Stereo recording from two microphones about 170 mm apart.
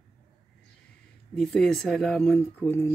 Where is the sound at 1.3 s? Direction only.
5° left (ahead or behind).